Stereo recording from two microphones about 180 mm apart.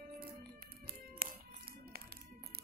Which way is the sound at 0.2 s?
60° right (ahead or behind).